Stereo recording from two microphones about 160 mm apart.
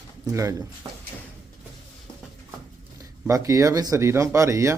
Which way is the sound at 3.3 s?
20° right (ahead or behind).